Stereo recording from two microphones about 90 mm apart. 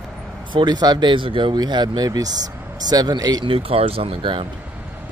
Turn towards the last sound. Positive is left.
turn(degrees=-80)